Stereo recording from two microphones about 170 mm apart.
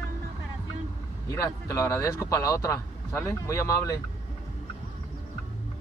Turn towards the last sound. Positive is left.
turn(degrees=20)  # may be behind; listen again after turning